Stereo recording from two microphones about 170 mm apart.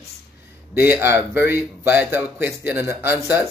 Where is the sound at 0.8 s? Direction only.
15° right (ahead or behind).